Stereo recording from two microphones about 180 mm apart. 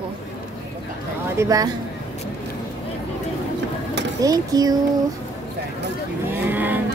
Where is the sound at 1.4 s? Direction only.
20° right (ahead or behind).